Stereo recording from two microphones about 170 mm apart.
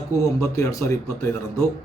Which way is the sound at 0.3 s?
15° left (ahead or behind).